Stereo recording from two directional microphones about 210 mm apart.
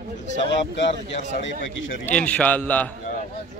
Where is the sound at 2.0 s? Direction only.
5° left (ahead or behind).